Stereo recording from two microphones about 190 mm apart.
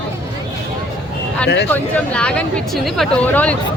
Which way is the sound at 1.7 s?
5° left (ahead or behind).